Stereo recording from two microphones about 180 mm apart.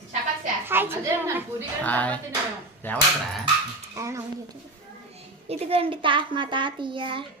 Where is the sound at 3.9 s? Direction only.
15° right (ahead or behind).